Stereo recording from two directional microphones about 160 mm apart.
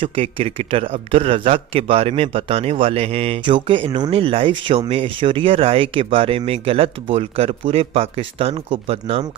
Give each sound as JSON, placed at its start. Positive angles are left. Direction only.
{"t": 0.0, "sound": "a man's voice", "side_deg": -35}